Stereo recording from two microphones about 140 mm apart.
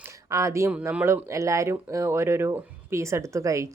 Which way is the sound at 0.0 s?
20° right (ahead or behind).